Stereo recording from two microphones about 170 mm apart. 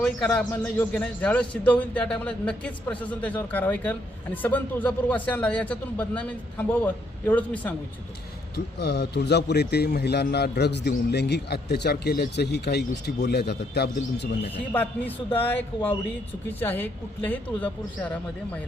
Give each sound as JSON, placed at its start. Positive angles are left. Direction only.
{"t": 0.3, "sound": "speech", "side_deg": 10}
{"t": 8.5, "sound": "a man's voice", "side_deg": 80}
{"t": 14.7, "sound": "speech", "side_deg": 10}